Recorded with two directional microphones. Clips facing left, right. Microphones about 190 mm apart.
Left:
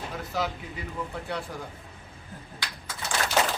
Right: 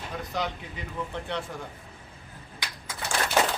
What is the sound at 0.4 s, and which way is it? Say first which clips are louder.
Speech: left 1 dB; 5° left (ahead or behind).